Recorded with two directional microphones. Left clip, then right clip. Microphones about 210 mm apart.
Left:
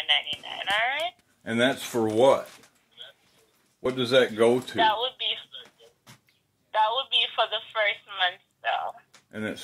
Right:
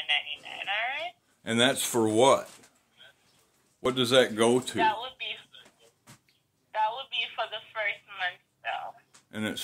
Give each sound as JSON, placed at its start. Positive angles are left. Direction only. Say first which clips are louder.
{"t": 0.0, "sound": "speech", "louder": "left 4 dB", "side_deg": 30}
{"t": 1.4, "sound": "speech", "louder": "even", "side_deg": -20}
{"t": 3.8, "sound": "a man's voice", "louder": "left 1 dB", "side_deg": -20}
{"t": 4.7, "sound": "speech", "louder": "left 4 dB", "side_deg": 30}
{"t": 6.7, "sound": "telephone", "louder": "left 6 dB", "side_deg": 35}
{"t": 9.3, "sound": "speech", "louder": "left 1 dB", "side_deg": -20}